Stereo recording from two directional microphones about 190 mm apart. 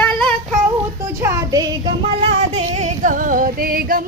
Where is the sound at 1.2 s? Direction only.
15° right (ahead or behind).